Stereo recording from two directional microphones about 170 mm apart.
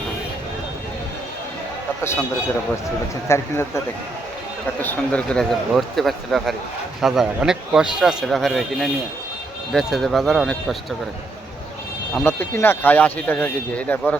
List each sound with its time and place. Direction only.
3.2 s speech: 15° left (ahead or behind)
12.1 s speech: 10° left (ahead or behind)